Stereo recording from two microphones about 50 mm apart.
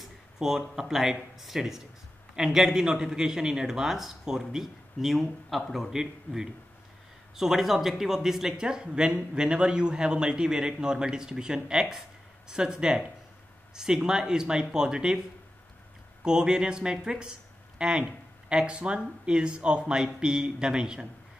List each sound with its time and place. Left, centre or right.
0.0 s a man's voice: centre
5.9 s a man's voice: centre
16.3 s a man's voice: centre